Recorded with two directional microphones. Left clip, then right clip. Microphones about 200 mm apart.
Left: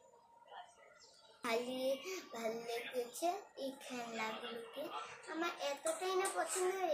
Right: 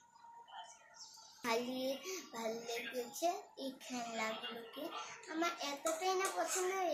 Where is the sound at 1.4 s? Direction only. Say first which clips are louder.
Even; centre (ahead or behind).